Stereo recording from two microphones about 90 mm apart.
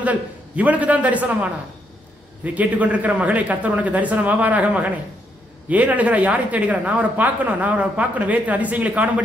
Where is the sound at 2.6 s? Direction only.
15° right (ahead or behind).